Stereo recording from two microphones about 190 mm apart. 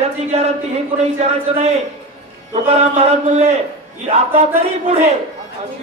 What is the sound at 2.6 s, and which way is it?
Speech, 30° right (ahead or behind).